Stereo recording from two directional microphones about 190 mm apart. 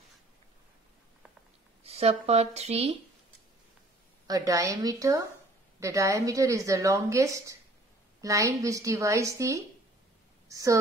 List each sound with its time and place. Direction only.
1.8 s speech: 30° right (ahead or behind)
4.3 s a woman's voice: 15° right (ahead or behind)